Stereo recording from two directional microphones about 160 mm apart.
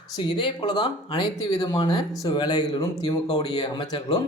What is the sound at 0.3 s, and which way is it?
Speech, 25° left (ahead or behind).